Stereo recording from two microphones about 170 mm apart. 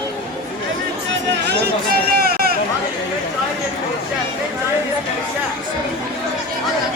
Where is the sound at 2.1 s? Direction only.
65° right (ahead or behind).